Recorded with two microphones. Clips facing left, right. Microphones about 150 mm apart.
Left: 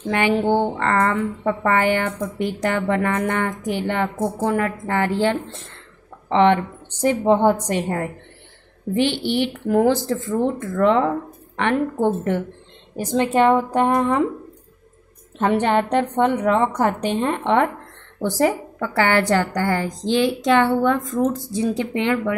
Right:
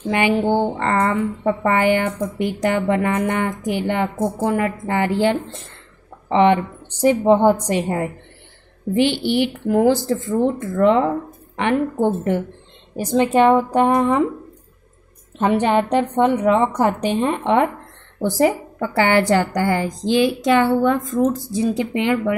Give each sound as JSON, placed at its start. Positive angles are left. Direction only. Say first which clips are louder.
{"t": 0.1, "sound": "a woman's voice", "louder": "right 1 dB", "side_deg": -10}
{"t": 15.6, "sound": "a woman's voice", "louder": "right 1 dB", "side_deg": -10}